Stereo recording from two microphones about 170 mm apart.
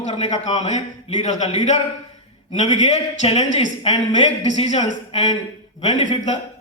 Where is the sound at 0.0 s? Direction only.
45° left (ahead or behind).